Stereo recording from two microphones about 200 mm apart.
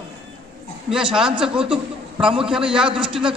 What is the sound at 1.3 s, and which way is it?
Speech, 25° right (ahead or behind).